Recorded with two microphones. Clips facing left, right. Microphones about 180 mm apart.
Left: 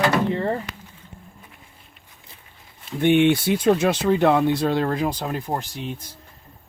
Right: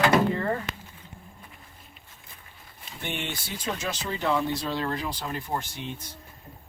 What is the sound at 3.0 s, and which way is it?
Speech, 65° left (ahead or behind).